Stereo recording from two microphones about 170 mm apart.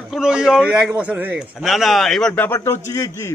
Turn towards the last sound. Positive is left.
turn(degrees=15)  # may be behind; listen again after turning